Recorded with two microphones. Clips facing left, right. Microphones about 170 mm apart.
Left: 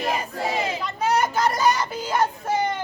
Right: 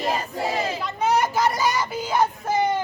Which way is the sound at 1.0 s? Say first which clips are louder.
Right 1 dB; 5° right (ahead or behind).